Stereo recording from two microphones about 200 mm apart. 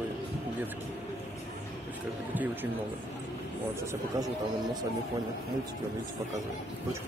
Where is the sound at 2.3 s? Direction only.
10° right (ahead or behind).